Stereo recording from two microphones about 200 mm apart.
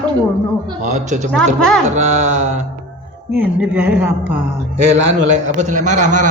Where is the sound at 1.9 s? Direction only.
35° right (ahead or behind).